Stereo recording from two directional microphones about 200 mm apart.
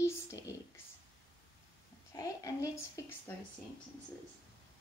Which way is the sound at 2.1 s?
15° left (ahead or behind).